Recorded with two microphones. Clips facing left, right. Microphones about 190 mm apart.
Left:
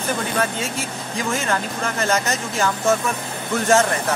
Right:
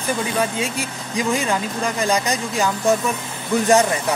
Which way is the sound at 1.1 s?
15° right (ahead or behind).